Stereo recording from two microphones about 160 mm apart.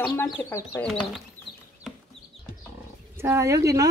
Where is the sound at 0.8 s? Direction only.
5° left (ahead or behind).